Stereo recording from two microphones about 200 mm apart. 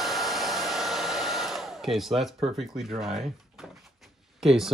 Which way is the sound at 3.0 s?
Centre (ahead or behind).